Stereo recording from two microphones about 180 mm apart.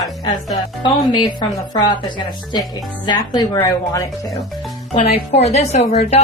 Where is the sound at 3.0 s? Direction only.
25° left (ahead or behind).